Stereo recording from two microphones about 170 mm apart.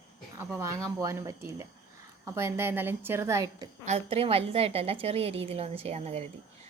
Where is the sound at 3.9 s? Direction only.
35° right (ahead or behind).